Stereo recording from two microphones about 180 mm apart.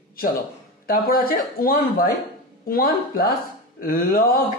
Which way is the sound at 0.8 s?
55° left (ahead or behind).